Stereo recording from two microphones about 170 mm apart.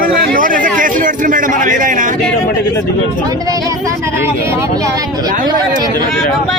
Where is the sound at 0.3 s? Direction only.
50° right (ahead or behind).